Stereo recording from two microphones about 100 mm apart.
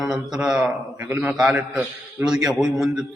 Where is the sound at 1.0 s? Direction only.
25° right (ahead or behind).